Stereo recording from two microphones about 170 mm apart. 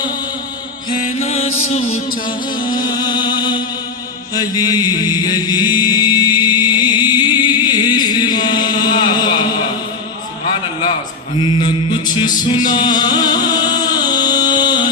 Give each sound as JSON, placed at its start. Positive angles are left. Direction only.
{"t": 1.1, "sound": "music", "side_deg": 35}
{"t": 2.8, "sound": "music", "side_deg": 25}
{"t": 4.4, "sound": "chant", "side_deg": 25}
{"t": 11.3, "sound": "mantra", "side_deg": 30}
{"t": 12.6, "sound": "music", "side_deg": 25}